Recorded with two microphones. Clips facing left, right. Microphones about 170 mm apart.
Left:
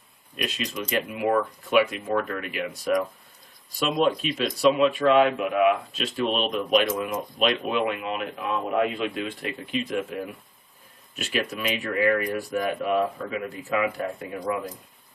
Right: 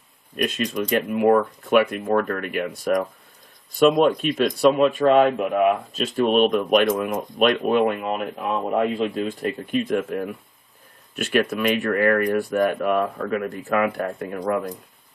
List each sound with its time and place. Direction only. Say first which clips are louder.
0.4 s speech: right 7 dB; 45° right (ahead or behind)